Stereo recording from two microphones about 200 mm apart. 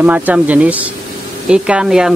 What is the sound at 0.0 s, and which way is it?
Speech, 5° right (ahead or behind).